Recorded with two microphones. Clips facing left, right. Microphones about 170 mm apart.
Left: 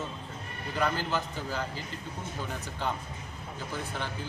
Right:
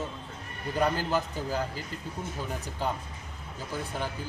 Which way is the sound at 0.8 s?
40° right (ahead or behind).